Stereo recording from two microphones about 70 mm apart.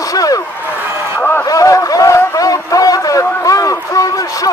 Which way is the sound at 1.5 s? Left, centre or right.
Left.